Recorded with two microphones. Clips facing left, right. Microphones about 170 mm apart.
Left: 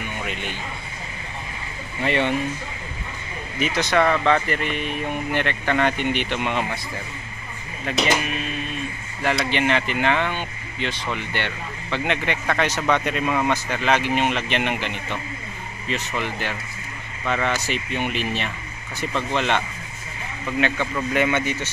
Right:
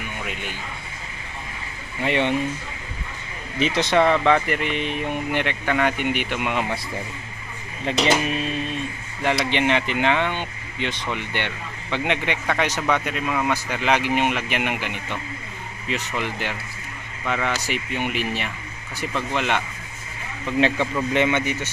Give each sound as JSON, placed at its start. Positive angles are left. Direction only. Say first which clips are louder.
{"t": 0.3, "sound": "speech", "louder": "left 2 dB", "side_deg": -10}
{"t": 2.0, "sound": "speech", "louder": "even", "side_deg": -15}
{"t": 3.5, "sound": "speech", "louder": "right 1 dB", "side_deg": -25}
{"t": 7.9, "sound": "speech", "louder": "right 2 dB", "side_deg": -25}
{"t": 9.2, "sound": "speech", "louder": "right 1 dB", "side_deg": -20}
{"t": 13.5, "sound": "speech", "louder": "left 1 dB", "side_deg": -15}
{"t": 20.7, "sound": "speech", "louder": "right 2 dB", "side_deg": 0}
{"t": 21.1, "sound": "speech", "louder": "left 1 dB", "side_deg": -20}